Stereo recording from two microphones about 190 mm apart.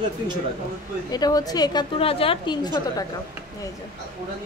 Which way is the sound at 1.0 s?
20° left (ahead or behind).